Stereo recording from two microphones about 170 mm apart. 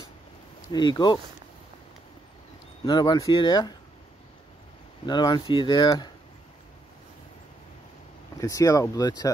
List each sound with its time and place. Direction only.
0.7 s speech: 25° left (ahead or behind)
2.8 s speech: 25° left (ahead or behind)
5.0 s speech: 25° left (ahead or behind)
8.4 s speech: 20° left (ahead or behind)